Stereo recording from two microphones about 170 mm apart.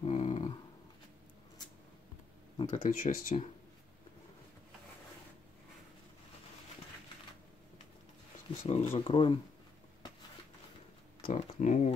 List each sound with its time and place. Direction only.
0.0 s a sound: 40° left (ahead or behind)
2.7 s speech: 55° left (ahead or behind)
8.6 s speech: 35° left (ahead or behind)
11.2 s speech: 45° left (ahead or behind)